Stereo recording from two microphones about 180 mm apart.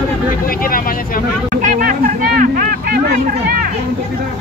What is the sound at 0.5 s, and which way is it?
Speech, 50° left (ahead or behind).